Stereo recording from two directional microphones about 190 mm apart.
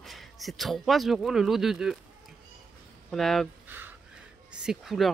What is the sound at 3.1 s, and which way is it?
Speech, centre (ahead or behind).